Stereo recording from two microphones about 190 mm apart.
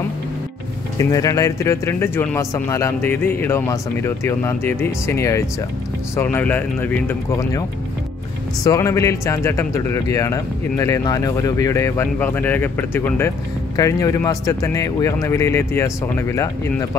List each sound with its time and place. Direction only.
0.9 s speech: 15° left (ahead or behind)
8.6 s speech: 15° left (ahead or behind)